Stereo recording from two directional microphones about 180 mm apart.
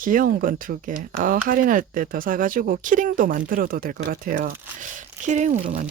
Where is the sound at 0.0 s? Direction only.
50° right (ahead or behind).